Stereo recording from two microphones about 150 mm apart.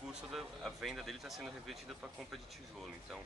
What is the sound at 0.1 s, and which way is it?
Speech, centre (ahead or behind).